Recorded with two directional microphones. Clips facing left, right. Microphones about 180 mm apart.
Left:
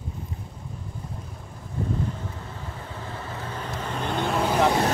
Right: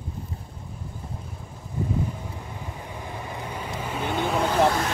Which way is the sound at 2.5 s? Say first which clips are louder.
Right 1 dB; 15° right (ahead or behind).